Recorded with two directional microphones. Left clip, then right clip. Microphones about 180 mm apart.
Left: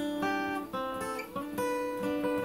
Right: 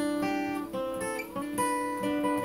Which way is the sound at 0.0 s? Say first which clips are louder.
Right 3 dB; 15° left (ahead or behind).